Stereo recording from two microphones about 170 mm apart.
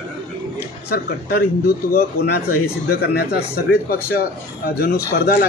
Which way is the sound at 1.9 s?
65° left (ahead or behind).